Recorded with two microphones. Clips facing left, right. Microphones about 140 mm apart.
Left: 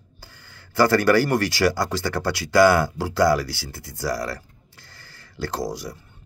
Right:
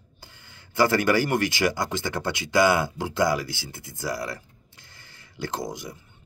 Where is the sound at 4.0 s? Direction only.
20° right (ahead or behind).